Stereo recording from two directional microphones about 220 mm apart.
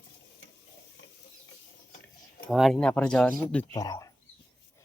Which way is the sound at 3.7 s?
15° left (ahead or behind).